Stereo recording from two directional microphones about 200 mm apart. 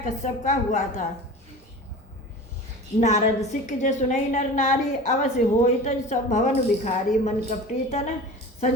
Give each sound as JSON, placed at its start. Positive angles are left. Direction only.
{"t": 0.0, "sound": "a woman's voice", "side_deg": 40}
{"t": 3.0, "sound": "a woman's voice", "side_deg": 35}